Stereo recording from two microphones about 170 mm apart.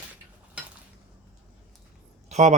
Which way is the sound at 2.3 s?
40° right (ahead or behind).